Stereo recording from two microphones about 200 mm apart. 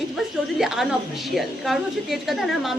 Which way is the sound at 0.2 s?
Centre (ahead or behind).